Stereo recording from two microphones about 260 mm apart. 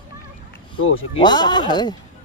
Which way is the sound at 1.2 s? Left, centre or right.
Centre.